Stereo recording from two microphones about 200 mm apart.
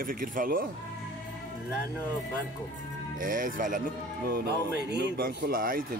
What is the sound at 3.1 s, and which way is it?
Speech, 45° right (ahead or behind).